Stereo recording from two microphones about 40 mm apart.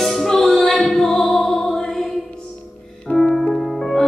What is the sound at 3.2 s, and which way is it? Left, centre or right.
Music, centre.